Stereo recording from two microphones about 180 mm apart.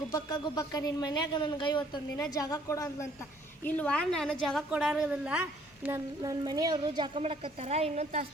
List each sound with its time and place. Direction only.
0.1 s a woman's voice: 20° left (ahead or behind); by 6.0 s 10° right (ahead or behind)
6.2 s a woman's voice: 20° right (ahead or behind)